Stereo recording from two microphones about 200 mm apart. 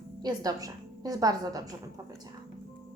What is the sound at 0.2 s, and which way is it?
A woman's voice, 20° right (ahead or behind).